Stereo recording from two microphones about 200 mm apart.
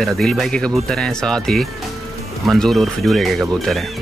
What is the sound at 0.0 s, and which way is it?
Speech, centre (ahead or behind).